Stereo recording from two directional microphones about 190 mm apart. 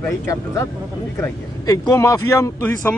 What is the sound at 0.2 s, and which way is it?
Speech, 15° left (ahead or behind).